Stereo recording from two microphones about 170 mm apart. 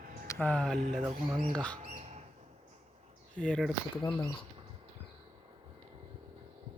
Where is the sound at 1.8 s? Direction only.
40° right (ahead or behind).